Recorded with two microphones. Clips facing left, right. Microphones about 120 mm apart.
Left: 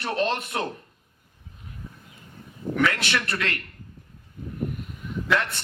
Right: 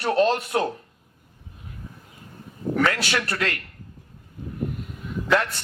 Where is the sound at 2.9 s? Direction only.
35° right (ahead or behind).